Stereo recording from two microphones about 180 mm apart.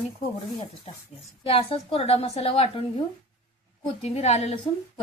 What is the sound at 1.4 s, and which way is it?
Speech, 30° left (ahead or behind).